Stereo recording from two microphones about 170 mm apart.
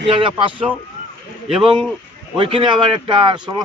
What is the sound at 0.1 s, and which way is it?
Speech, 30° right (ahead or behind).